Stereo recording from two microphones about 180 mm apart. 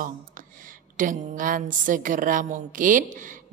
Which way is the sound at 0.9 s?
45° right (ahead or behind).